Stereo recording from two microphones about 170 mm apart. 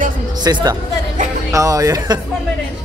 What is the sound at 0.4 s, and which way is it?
Speech, 25° right (ahead or behind).